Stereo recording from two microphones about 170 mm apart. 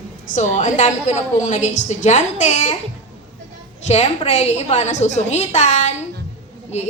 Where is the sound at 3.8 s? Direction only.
40° left (ahead or behind).